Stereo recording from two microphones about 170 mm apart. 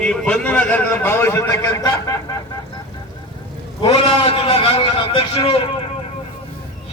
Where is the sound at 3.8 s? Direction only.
35° left (ahead or behind).